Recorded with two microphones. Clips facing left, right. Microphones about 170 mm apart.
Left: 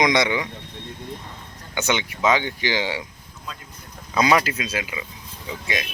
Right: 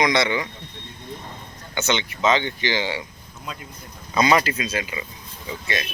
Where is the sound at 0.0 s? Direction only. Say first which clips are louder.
Left 1 dB; 15° left (ahead or behind).